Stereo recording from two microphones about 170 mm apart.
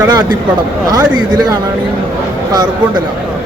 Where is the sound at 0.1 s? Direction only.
25° right (ahead or behind).